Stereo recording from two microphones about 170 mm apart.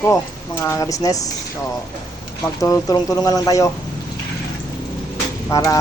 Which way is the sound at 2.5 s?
20° left (ahead or behind).